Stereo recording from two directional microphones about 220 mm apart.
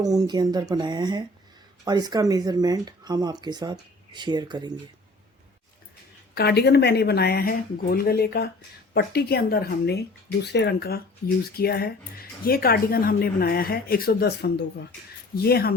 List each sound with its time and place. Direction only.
0.0 s speech: 15° right (ahead or behind)
6.3 s speech: 45° left (ahead or behind)